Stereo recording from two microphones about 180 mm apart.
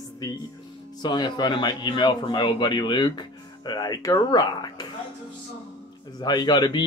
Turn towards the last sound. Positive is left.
turn(degrees=25)  # may be behind; listen again after turning